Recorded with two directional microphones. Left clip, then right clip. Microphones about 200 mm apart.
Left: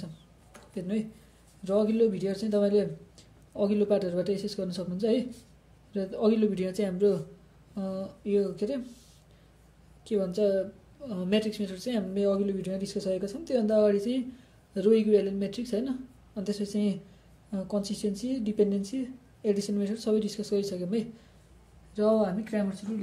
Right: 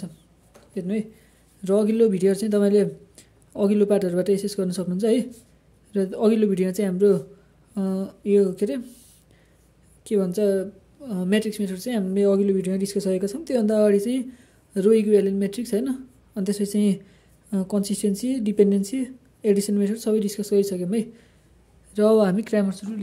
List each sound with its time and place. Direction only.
0.7 s a woman's voice: 30° right (ahead or behind)
1.6 s a woman's voice: 45° right (ahead or behind)
10.0 s a woman's voice: 40° right (ahead or behind)
21.9 s speech: 55° right (ahead or behind)